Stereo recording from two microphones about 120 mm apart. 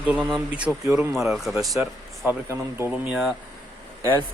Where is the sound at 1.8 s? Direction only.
20° right (ahead or behind).